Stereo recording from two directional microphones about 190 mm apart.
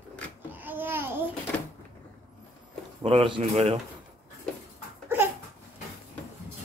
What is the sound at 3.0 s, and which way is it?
Speech, 30° right (ahead or behind).